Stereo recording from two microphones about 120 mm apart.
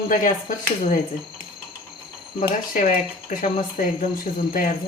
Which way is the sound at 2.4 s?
90° left.